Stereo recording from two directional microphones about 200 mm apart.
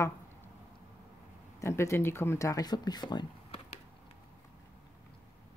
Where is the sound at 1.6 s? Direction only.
15° left (ahead or behind).